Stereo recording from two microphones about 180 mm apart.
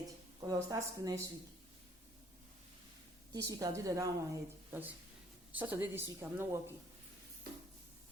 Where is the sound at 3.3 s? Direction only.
15° right (ahead or behind).